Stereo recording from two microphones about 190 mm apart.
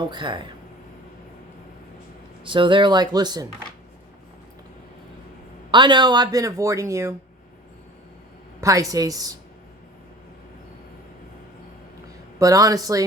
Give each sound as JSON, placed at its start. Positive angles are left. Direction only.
{"t": 0.1, "sound": "speech", "side_deg": -25}
{"t": 2.4, "sound": "speech", "side_deg": -25}
{"t": 5.7, "sound": "speech", "side_deg": -25}
{"t": 8.6, "sound": "speech", "side_deg": -15}
{"t": 12.4, "sound": "speech", "side_deg": -20}